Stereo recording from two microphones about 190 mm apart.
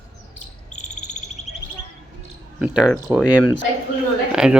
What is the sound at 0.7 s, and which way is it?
Bird, 40° left (ahead or behind).